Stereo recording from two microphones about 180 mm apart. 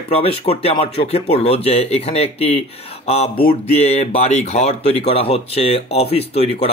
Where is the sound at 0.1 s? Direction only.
35° left (ahead or behind).